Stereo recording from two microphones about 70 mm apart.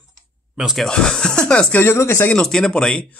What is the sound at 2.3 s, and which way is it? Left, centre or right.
Speech, centre.